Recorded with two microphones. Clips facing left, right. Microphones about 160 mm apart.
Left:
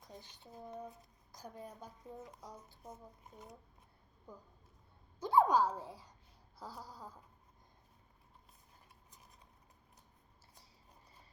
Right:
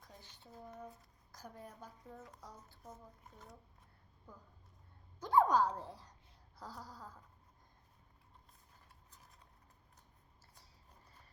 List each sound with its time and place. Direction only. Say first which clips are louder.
0.0 s speech: left 4 dB; 15° left (ahead or behind)
5.2 s a child's voice: left 1 dB; 10° left (ahead or behind)